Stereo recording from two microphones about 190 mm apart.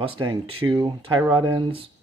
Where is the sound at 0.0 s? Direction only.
30° right (ahead or behind).